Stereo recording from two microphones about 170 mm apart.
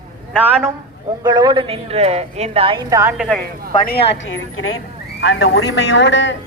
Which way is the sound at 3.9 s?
75° left (ahead or behind).